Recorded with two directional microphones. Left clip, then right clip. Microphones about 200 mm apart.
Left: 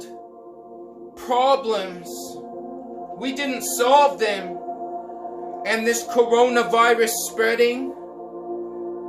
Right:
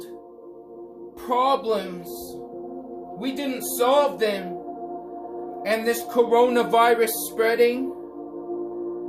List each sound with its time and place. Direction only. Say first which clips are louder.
1.3 s a man's voice: left 3 dB; 15° left (ahead or behind)
3.2 s a man's voice: left 3 dB; 15° left (ahead or behind)
5.6 s a man's voice: left 2 dB; 10° left (ahead or behind)